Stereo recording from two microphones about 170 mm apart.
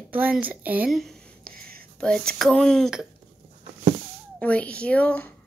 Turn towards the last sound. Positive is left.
turn(degrees=10)  # may be behind; listen again after turning